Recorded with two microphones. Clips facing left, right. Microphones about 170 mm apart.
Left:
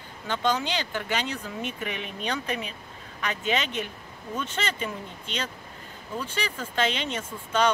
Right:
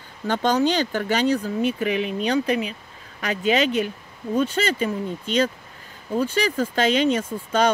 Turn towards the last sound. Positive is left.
turn(degrees=-40)  # may be behind; listen again after turning